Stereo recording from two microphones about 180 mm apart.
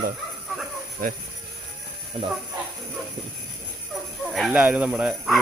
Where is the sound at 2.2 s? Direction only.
35° right (ahead or behind).